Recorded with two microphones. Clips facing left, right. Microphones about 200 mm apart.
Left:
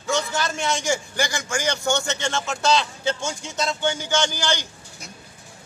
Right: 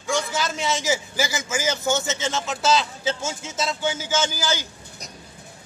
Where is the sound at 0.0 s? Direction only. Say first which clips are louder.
Even; centre (ahead or behind).